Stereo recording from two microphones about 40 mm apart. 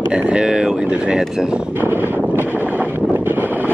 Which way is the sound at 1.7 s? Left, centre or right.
Right.